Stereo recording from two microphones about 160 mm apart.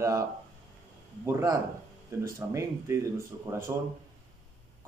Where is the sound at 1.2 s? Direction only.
20° right (ahead or behind).